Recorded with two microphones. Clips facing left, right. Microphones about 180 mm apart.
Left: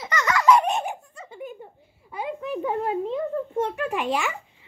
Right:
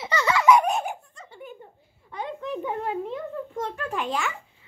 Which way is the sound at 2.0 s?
5° left (ahead or behind).